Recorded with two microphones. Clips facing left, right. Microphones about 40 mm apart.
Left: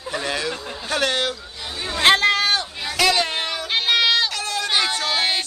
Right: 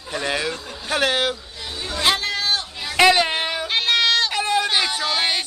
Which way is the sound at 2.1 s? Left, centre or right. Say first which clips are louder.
Left 6 dB; left.